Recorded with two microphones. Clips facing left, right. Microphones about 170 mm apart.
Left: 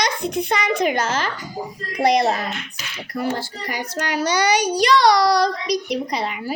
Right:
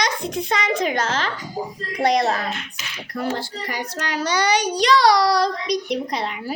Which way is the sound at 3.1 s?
10° left (ahead or behind).